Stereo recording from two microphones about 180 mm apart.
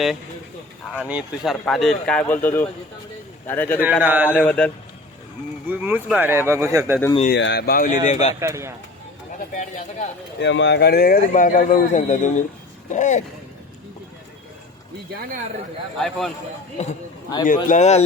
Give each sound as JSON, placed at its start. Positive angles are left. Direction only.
{"t": 0.9, "sound": "a man's voice", "side_deg": -5}
{"t": 4.0, "sound": "speech", "side_deg": -10}
{"t": 4.3, "sound": "a man's voice", "side_deg": 10}
{"t": 5.6, "sound": "speech", "side_deg": -10}
{"t": 7.3, "sound": "speech", "side_deg": 80}
{"t": 7.7, "sound": "a man's voice", "side_deg": 55}
{"t": 8.0, "sound": "speech", "side_deg": 40}
{"t": 8.4, "sound": "speech", "side_deg": -15}
{"t": 9.6, "sound": "a man's voice", "side_deg": 40}
{"t": 10.4, "sound": "a man's voice", "side_deg": 85}
{"t": 15.1, "sound": "speech", "side_deg": -55}
{"t": 16.0, "sound": "a man's voice", "side_deg": 0}
{"t": 16.8, "sound": "a man's voice", "side_deg": 40}